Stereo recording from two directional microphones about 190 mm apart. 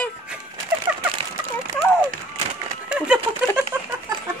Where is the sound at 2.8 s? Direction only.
5° right (ahead or behind).